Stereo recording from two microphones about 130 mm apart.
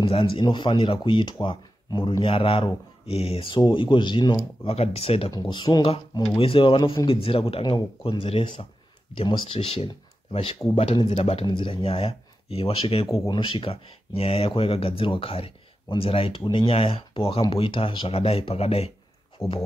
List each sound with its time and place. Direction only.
0.0 s speech: 45° left (ahead or behind)
4.7 s speech: 50° left (ahead or behind)
5.3 s speech: 35° left (ahead or behind); by 11.4 s 50° left (ahead or behind)
11.4 s speech: 40° left (ahead or behind)
19.4 s speech: 25° left (ahead or behind)